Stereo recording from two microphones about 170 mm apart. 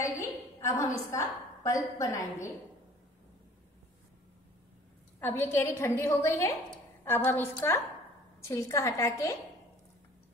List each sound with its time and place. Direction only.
0.6 s a woman's voice: 15° left (ahead or behind)
5.2 s a woman's voice: 15° left (ahead or behind)